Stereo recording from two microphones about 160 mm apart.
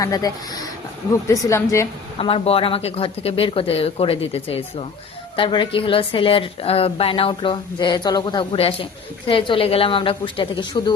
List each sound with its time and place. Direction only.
0.0 s a woman's voice: 20° left (ahead or behind)
2.1 s a woman's voice: 35° left (ahead or behind)